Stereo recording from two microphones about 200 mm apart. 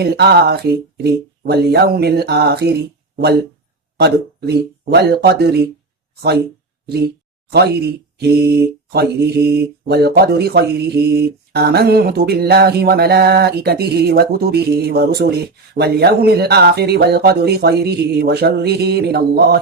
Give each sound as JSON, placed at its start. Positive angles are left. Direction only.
{"t": 0.0, "sound": "speech", "side_deg": -55}
{"t": 7.5, "sound": "speech", "side_deg": -55}